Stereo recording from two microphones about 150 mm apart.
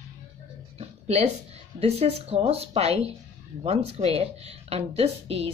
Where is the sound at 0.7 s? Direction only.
45° right (ahead or behind).